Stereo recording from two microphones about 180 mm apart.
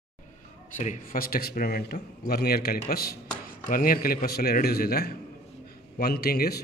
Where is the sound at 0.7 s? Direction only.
50° left (ahead or behind).